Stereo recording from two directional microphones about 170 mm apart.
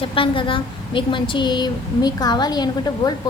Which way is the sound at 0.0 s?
30° left (ahead or behind).